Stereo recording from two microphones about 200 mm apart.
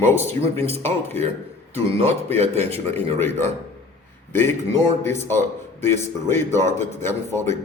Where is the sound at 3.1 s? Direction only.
10° left (ahead or behind).